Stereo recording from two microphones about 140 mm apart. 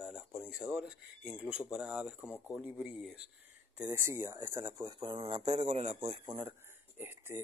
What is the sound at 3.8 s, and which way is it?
A man's voice, 15° right (ahead or behind).